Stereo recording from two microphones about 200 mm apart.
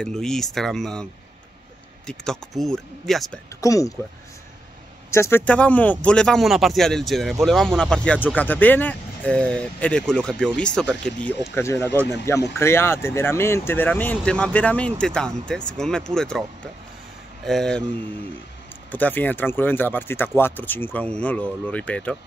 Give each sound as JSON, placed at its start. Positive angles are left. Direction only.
{"t": 0.0, "sound": "speech", "side_deg": 0}
{"t": 2.0, "sound": "speech", "side_deg": 0}
{"t": 3.6, "sound": "speech", "side_deg": 15}
{"t": 5.1, "sound": "speech", "side_deg": 10}
{"t": 17.5, "sound": "speech", "side_deg": 0}
{"t": 18.9, "sound": "speech", "side_deg": 10}